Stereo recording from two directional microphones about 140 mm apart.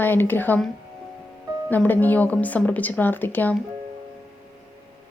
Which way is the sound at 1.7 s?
10° left (ahead or behind).